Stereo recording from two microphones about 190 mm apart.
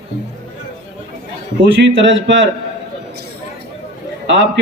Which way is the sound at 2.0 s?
80° right.